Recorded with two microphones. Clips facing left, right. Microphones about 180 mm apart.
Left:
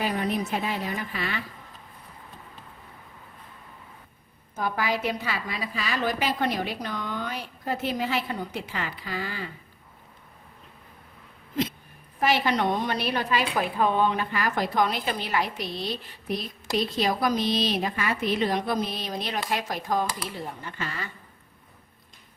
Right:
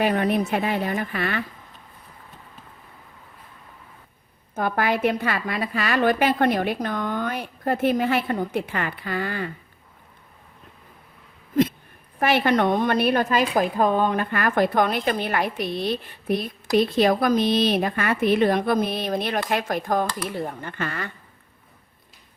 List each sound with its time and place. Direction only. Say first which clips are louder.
0.0 s a woman's voice: right 6 dB; 60° right (ahead or behind)
4.5 s a woman's voice: right 5 dB; 55° right (ahead or behind)
12.2 s a woman's voice: right 4 dB; 55° right (ahead or behind)